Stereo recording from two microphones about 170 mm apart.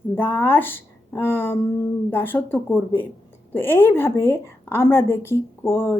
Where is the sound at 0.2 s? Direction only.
10° left (ahead or behind).